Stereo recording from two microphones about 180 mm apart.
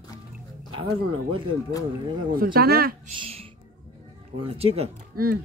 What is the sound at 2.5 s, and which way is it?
Speech, 55° right (ahead or behind).